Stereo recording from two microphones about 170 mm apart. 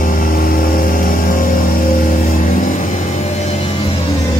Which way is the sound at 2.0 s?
55° left (ahead or behind).